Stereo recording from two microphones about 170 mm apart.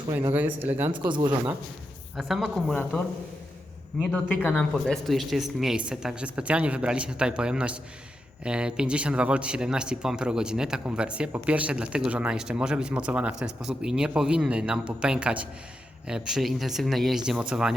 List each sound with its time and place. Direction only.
0.1 s speech: 25° right (ahead or behind)
0.3 s speech: 10° right (ahead or behind)
0.9 s speech: 30° right (ahead or behind)
2.1 s speech: centre (ahead or behind)
4.0 s speech: 10° left (ahead or behind)